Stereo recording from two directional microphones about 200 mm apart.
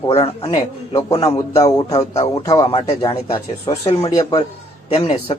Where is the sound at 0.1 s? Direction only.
25° left (ahead or behind).